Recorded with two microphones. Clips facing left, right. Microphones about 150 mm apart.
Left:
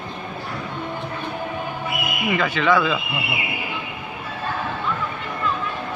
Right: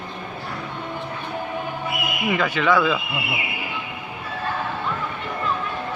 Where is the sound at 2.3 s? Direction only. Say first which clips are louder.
Left 1 dB; 10° right (ahead or behind).